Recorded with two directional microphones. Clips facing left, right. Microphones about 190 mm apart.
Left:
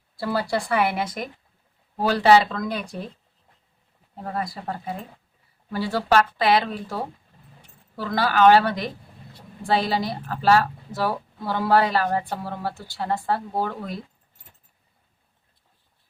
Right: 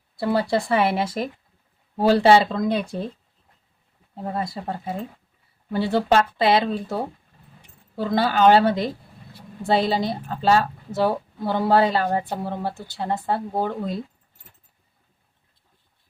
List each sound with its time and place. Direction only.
0.2 s a woman's voice: 20° right (ahead or behind)
4.2 s a woman's voice: 25° right (ahead or behind)